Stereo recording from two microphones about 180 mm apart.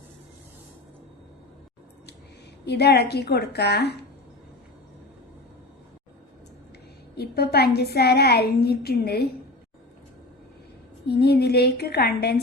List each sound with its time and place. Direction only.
2.6 s a woman's voice: 65° left (ahead or behind)
7.2 s a woman's voice: 60° left (ahead or behind)
11.1 s a woman's voice: 65° left (ahead or behind)